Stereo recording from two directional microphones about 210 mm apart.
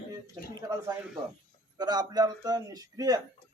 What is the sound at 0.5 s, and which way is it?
A man's voice, 20° right (ahead or behind).